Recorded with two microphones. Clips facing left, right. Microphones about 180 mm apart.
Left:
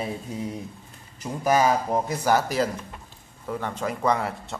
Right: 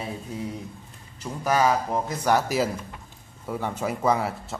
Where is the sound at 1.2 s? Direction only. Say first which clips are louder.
Left 1 dB; 15° left (ahead or behind).